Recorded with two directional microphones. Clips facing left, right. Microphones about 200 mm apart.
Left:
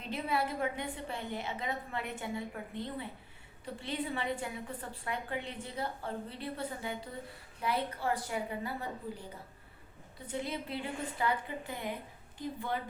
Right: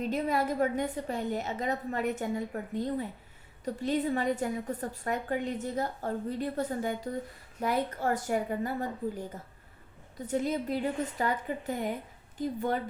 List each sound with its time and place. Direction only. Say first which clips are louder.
0.0 s a woman's voice: right 5 dB; 45° right (ahead or behind)